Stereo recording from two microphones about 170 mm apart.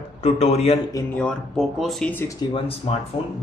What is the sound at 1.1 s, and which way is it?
Speech, 5° left (ahead or behind).